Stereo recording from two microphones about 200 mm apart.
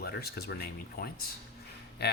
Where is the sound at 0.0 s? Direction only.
50° left (ahead or behind).